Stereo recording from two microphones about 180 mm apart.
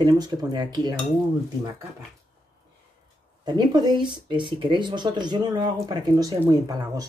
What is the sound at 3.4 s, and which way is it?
Speech, 25° right (ahead or behind).